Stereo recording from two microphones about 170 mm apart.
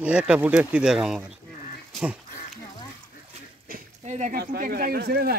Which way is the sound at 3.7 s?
45° right (ahead or behind).